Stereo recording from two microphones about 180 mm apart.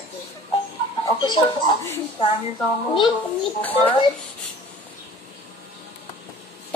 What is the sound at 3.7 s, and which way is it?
Speech, 30° left (ahead or behind).